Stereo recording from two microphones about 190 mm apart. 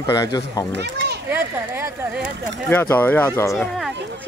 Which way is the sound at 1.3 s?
10° right (ahead or behind).